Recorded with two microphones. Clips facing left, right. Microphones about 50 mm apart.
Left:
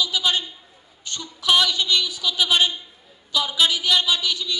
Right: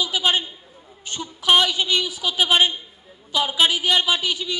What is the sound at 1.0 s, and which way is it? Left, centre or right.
A woman's voice, right.